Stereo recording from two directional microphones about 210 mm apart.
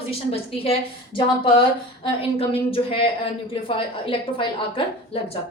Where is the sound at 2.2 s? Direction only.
25° left (ahead or behind).